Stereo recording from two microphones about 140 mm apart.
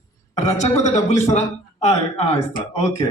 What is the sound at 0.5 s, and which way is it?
A man's voice, 55° left (ahead or behind).